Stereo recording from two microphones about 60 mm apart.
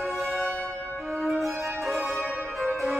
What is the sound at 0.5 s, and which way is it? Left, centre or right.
Church bell, left.